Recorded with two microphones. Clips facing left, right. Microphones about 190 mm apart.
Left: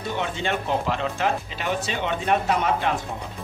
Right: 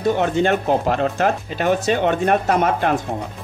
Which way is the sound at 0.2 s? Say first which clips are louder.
Right 9 dB; 50° right (ahead or behind).